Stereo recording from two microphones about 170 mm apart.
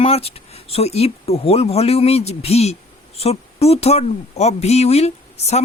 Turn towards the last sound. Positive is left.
turn(degrees=40)  # may be behind; listen again after turning